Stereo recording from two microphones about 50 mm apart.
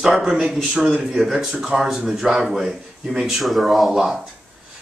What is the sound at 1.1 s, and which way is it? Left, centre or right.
Speech, centre.